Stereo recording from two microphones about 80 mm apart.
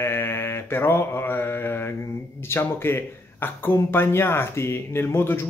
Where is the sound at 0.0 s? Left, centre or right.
Left.